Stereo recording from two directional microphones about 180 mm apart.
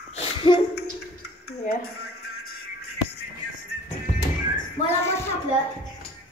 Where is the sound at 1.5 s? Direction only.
60° left (ahead or behind).